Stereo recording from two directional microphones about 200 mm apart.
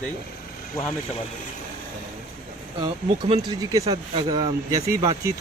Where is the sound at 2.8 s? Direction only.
25° right (ahead or behind).